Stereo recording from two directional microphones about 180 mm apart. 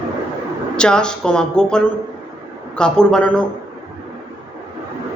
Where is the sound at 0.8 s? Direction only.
5° left (ahead or behind).